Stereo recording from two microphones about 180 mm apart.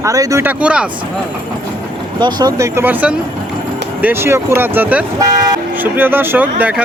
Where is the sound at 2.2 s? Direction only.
25° right (ahead or behind).